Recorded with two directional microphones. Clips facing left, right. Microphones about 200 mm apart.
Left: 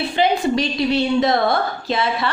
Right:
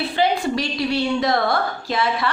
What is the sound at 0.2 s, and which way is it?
A woman's voice, 20° left (ahead or behind).